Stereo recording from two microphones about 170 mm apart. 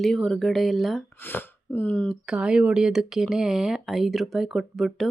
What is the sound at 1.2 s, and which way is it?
Speech, 10° left (ahead or behind).